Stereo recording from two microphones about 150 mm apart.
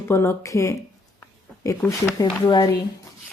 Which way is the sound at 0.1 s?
15° left (ahead or behind).